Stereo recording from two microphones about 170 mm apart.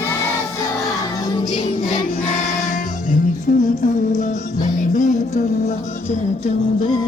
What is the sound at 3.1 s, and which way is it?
Music, 50° left (ahead or behind).